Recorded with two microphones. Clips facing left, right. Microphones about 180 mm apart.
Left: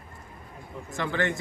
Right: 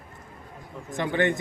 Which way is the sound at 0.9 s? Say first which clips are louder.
Right 4 dB; 20° right (ahead or behind).